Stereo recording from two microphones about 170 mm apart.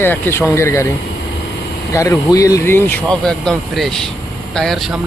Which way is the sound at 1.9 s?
20° left (ahead or behind).